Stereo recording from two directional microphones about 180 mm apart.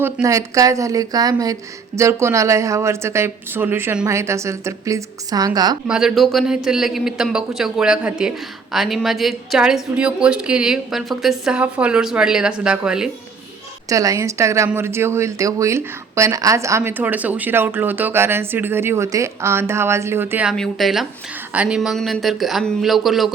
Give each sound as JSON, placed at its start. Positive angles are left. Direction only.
{"t": 0.0, "sound": "speech", "side_deg": -15}
{"t": 5.9, "sound": "a woman's voice", "side_deg": -5}
{"t": 13.9, "sound": "a woman's voice", "side_deg": -20}